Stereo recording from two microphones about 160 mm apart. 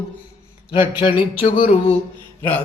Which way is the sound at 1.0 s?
30° left (ahead or behind).